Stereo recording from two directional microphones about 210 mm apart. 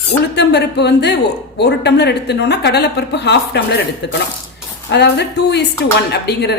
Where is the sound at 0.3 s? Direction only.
55° left (ahead or behind).